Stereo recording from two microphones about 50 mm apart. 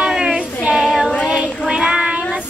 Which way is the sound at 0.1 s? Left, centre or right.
Centre.